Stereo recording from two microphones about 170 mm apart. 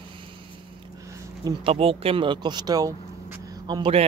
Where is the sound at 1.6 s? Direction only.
35° right (ahead or behind).